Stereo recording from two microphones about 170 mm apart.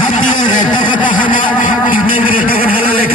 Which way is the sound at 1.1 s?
55° left (ahead or behind).